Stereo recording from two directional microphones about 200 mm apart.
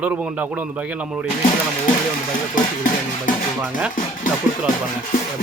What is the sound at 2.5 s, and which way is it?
Music, 40° left (ahead or behind).